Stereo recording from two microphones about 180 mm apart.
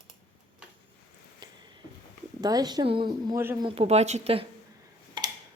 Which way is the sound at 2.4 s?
20° right (ahead or behind).